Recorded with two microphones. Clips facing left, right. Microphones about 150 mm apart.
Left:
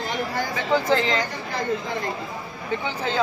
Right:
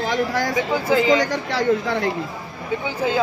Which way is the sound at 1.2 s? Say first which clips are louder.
Right 7 dB; 85° right.